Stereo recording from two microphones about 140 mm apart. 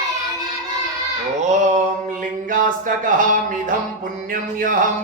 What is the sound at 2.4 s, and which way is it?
Speech, 70° right (ahead or behind).